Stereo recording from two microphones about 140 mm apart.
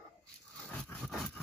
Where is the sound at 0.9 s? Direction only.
5° left (ahead or behind).